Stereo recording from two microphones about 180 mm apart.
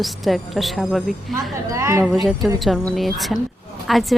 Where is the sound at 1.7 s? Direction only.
15° right (ahead or behind).